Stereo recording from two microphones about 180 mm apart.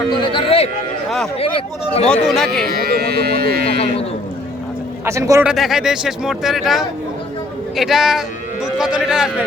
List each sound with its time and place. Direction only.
0.2 s a sound: 30° left (ahead or behind)
1.4 s speech: 35° left (ahead or behind)
2.0 s speech: centre (ahead or behind)
2.6 s speech: 60° right (ahead or behind)
3.7 s speech: 30° left (ahead or behind)
5.0 s a man's voice: 15° right (ahead or behind)
5.5 s speech: centre (ahead or behind)